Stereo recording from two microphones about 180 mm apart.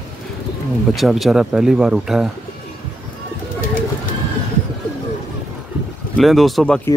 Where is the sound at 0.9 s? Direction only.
Centre (ahead or behind).